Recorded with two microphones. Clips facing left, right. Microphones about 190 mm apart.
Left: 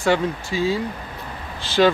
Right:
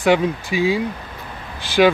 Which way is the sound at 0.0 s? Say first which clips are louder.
Right 3 dB; 15° right (ahead or behind).